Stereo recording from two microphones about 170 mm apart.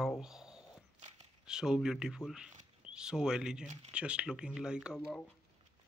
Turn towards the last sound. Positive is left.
turn(degrees=-5)  # may be behind; listen again after turning